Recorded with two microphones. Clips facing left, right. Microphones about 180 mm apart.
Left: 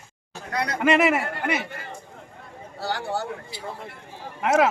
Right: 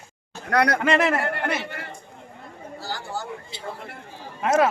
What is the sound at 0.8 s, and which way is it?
Speech, 5° left (ahead or behind).